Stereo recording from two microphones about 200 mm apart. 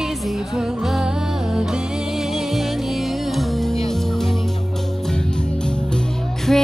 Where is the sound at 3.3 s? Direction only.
Centre (ahead or behind).